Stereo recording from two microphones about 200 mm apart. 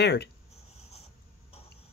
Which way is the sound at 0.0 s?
55° left (ahead or behind).